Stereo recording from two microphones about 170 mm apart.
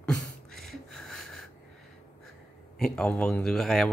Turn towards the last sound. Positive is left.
turn(degrees=0)  # may be behind; listen again after turning